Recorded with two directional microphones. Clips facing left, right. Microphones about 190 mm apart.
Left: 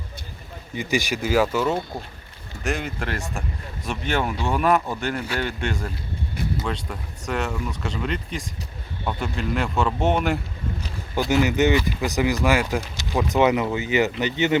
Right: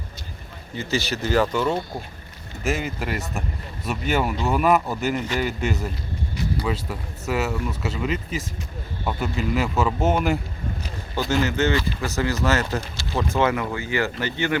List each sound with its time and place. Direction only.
0.8 s speech: 15° left (ahead or behind)
11.3 s speech: 15° left (ahead or behind)